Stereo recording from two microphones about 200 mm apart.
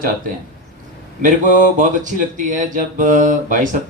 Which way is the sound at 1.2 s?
40° right (ahead or behind).